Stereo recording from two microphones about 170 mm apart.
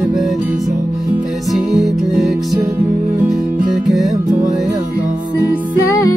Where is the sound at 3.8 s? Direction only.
Centre (ahead or behind).